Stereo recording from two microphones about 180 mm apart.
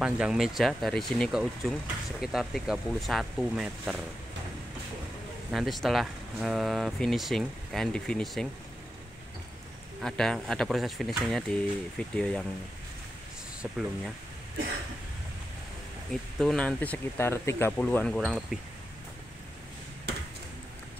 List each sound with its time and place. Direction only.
0.0 s speech: 5° right (ahead or behind)
5.5 s speech: centre (ahead or behind)
10.0 s speech: centre (ahead or behind)
13.6 s speech: 5° right (ahead or behind)
16.1 s speech: centre (ahead or behind)
20.1 s a sound: 65° right (ahead or behind)